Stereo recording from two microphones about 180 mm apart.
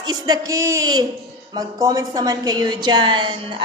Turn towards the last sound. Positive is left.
turn(degrees=-25)  # may be behind; listen again after turning